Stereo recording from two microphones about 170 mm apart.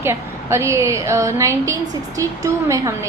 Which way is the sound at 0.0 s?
15° right (ahead or behind).